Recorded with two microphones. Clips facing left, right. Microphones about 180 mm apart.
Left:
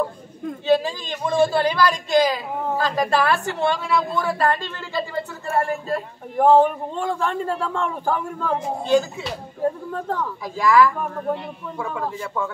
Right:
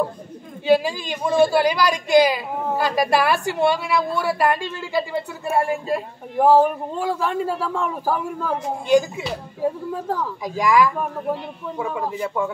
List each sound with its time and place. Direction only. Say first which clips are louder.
0.7 s a woman's voice: right 2 dB; 10° right (ahead or behind)